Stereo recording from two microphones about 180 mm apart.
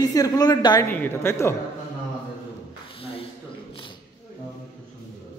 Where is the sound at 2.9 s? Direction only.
30° left (ahead or behind).